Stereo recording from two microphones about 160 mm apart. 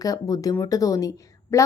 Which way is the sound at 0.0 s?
20° left (ahead or behind).